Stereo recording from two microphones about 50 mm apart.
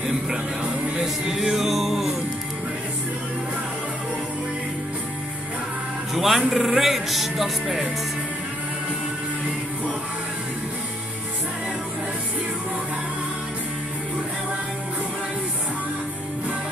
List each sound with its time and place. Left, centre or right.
0.9 s music: centre
6.1 s speech: centre